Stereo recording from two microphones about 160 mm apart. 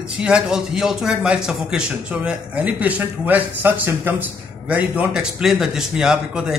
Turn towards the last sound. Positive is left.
turn(degrees=-5)  # may be behind; listen again after turning